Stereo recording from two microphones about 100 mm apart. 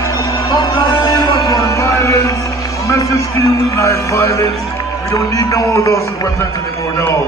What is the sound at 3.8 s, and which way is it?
Music, 30° left (ahead or behind).